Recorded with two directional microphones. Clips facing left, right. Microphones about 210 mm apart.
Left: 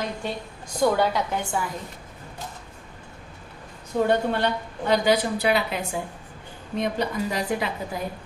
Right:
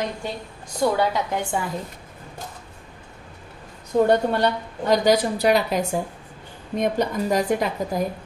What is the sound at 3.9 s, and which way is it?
A woman's voice, 40° right (ahead or behind).